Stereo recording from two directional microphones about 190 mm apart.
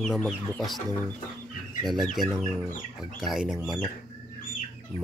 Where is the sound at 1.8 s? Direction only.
Centre (ahead or behind).